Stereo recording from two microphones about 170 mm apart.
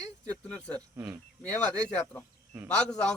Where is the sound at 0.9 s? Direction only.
10° right (ahead or behind).